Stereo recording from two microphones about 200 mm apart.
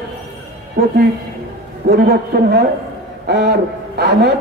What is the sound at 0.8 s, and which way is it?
A man's voice, 55° right (ahead or behind).